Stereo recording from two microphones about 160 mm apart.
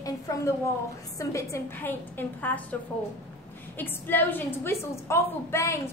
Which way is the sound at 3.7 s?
10° left (ahead or behind).